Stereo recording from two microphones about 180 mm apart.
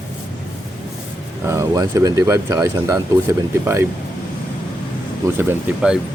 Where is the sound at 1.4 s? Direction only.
15° right (ahead or behind).